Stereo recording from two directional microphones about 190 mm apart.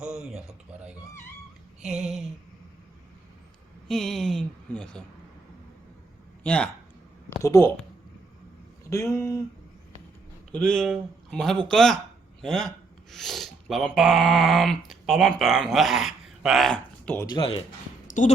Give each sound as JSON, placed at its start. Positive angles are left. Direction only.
{"t": 0.0, "sound": "a sound", "side_deg": -5}
{"t": 1.8, "sound": "speech", "side_deg": -5}
{"t": 3.8, "sound": "speech", "side_deg": 0}
{"t": 6.4, "sound": "a man's voice", "side_deg": 5}
{"t": 7.4, "sound": "speech", "side_deg": 15}
{"t": 8.8, "sound": "speech", "side_deg": 15}
{"t": 10.5, "sound": "speech", "side_deg": 5}
{"t": 17.3, "sound": "speech", "side_deg": 30}
{"t": 18.2, "sound": "a woman's voice", "side_deg": 40}